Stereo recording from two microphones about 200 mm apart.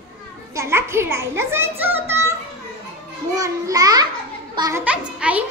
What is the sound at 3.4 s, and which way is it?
A child's voice, 15° right (ahead or behind).